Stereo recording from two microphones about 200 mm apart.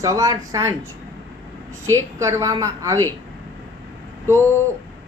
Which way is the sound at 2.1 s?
15° right (ahead or behind).